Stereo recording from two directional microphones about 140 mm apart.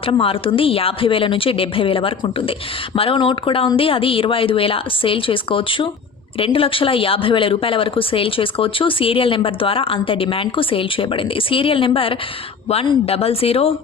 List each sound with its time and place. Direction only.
0.0 s speech: 40° left (ahead or behind)